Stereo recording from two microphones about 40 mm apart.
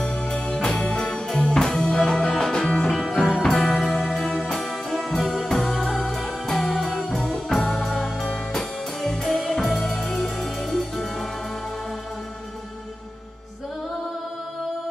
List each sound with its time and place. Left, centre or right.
0.0 s music: centre
2.9 s music: centre
7.3 s organ: centre
7.7 s music: centre